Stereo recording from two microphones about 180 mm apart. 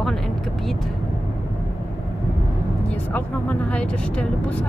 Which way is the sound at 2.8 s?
10° left (ahead or behind).